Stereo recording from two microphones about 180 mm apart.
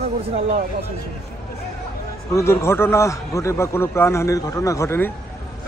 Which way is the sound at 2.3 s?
15° left (ahead or behind).